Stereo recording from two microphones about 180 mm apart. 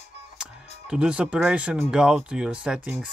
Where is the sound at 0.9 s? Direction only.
5° right (ahead or behind).